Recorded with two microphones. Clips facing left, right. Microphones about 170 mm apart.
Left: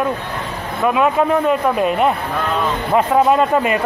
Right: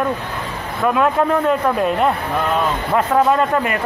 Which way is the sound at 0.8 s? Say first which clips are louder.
Left 1 dB; 10° left (ahead or behind).